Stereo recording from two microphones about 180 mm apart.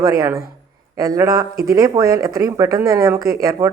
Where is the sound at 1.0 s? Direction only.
20° right (ahead or behind).